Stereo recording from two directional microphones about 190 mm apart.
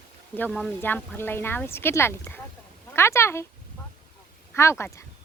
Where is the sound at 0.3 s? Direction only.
5° left (ahead or behind).